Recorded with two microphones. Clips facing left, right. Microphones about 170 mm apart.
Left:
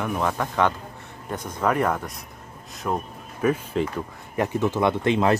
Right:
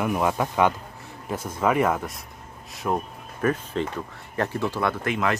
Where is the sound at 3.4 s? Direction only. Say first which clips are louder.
Left 2 dB; 5° left (ahead or behind); by 5.3 s 30° left (ahead or behind).